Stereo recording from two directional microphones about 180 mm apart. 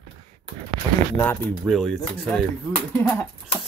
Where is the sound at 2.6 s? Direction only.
10° left (ahead or behind).